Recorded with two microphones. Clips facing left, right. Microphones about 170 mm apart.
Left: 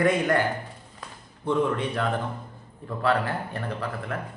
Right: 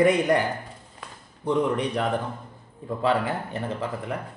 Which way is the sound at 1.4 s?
15° right (ahead or behind).